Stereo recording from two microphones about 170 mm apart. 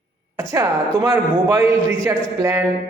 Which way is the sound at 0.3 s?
20° right (ahead or behind).